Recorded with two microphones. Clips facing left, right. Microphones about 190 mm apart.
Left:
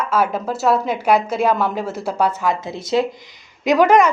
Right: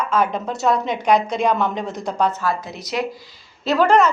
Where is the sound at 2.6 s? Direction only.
25° left (ahead or behind).